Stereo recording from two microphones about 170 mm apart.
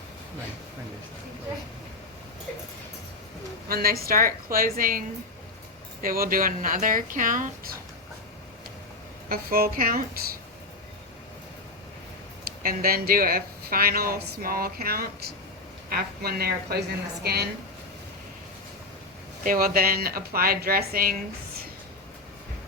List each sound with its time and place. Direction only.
3.7 s speech: 60° right (ahead or behind)
9.3 s speech: 60° right (ahead or behind)
12.5 s a woman's voice: 60° right (ahead or behind)
19.5 s speech: 60° right (ahead or behind)